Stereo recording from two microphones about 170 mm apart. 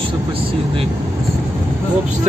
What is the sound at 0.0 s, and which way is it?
Speech, 30° right (ahead or behind).